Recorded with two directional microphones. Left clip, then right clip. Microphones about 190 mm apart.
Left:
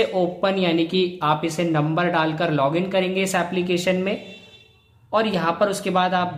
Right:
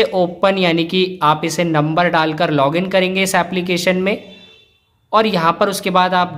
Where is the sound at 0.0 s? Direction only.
25° right (ahead or behind).